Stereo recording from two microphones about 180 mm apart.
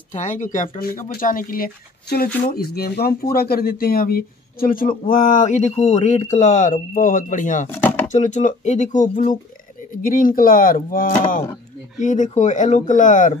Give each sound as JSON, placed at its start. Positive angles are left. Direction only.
{"t": 0.1, "sound": "speech", "side_deg": 40}
{"t": 7.7, "sound": "speech", "side_deg": 10}
{"t": 8.1, "sound": "speech", "side_deg": 40}